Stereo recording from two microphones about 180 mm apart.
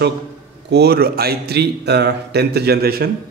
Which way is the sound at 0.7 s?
60° right (ahead or behind).